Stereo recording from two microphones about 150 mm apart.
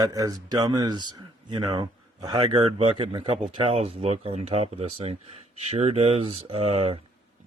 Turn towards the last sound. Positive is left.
turn(degrees=-40)  # may be behind; listen again after turning